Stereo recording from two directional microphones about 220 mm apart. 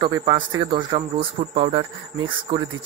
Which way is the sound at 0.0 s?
20° right (ahead or behind).